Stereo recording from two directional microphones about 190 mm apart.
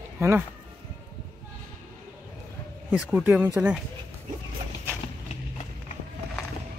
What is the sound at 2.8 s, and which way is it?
Speech, 5° right (ahead or behind).